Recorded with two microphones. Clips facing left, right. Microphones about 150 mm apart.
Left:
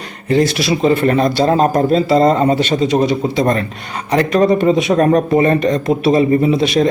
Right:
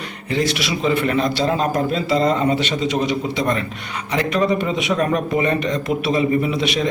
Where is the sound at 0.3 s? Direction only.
40° left (ahead or behind).